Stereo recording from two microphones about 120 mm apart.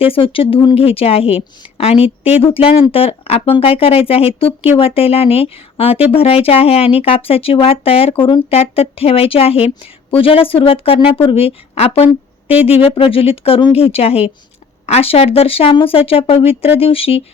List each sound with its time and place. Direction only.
0.0 s a woman's voice: 50° left (ahead or behind)